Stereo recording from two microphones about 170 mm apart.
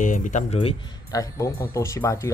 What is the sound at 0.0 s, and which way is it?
Speech, 50° left (ahead or behind).